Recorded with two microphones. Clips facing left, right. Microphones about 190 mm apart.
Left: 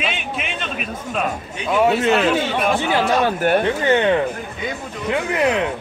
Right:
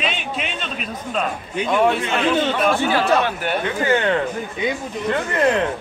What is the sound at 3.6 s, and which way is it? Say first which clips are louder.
Speech: left 2 dB; 20° left (ahead or behind).